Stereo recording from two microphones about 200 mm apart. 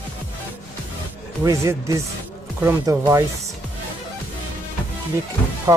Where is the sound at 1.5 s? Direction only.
15° right (ahead or behind).